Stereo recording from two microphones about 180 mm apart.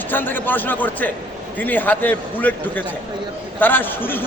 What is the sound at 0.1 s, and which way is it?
A man's voice, 10° left (ahead or behind).